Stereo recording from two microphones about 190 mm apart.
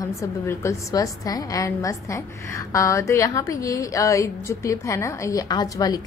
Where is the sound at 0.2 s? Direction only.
15° left (ahead or behind).